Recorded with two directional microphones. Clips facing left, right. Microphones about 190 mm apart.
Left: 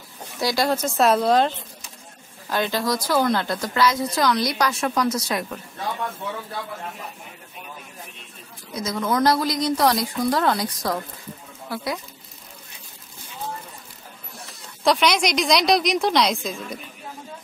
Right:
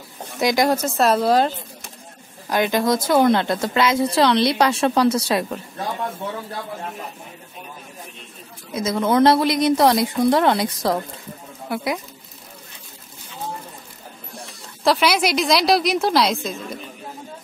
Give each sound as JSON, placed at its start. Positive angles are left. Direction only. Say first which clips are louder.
{"t": 0.4, "sound": "a woman's voice", "louder": "right 4 dB", "side_deg": -20}
{"t": 0.8, "sound": "a woman's voice", "louder": "right 1 dB", "side_deg": 0}
{"t": 2.5, "sound": "a woman's voice", "louder": "right 4 dB", "side_deg": -20}
{"t": 8.7, "sound": "a woman's voice", "louder": "right 5 dB", "side_deg": -25}
{"t": 14.8, "sound": "a woman's voice", "louder": "right 1 dB", "side_deg": -5}